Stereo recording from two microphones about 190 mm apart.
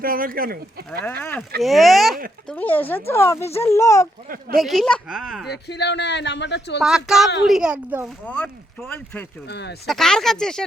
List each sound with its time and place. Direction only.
0.0 s speech: 50° right (ahead or behind)
0.9 s speech: 10° left (ahead or behind)
4.5 s speech: centre (ahead or behind)
5.5 s speech: 60° left (ahead or behind)
6.8 s speech: centre (ahead or behind)
8.2 s speech: 5° left (ahead or behind)
9.5 s speech: 65° left (ahead or behind)
9.8 s speech: centre (ahead or behind)